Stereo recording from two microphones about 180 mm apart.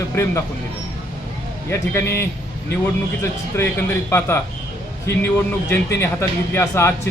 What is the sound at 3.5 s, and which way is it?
Speech, 15° left (ahead or behind).